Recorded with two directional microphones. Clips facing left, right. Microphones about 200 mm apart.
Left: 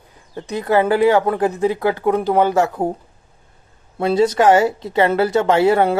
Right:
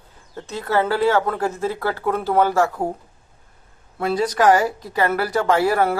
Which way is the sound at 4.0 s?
25° left (ahead or behind).